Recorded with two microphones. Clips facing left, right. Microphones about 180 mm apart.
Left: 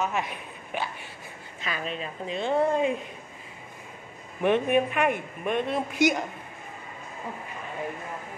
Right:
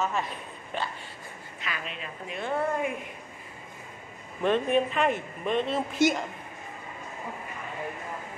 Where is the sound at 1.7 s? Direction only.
35° left (ahead or behind).